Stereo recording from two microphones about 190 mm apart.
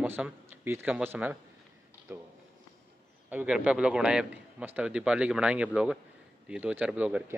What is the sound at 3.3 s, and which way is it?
A man's voice, 5° right (ahead or behind).